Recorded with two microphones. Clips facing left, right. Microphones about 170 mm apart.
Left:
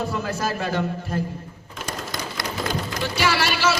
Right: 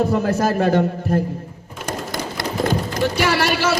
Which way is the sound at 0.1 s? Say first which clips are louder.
Right 8 dB; 45° right (ahead or behind).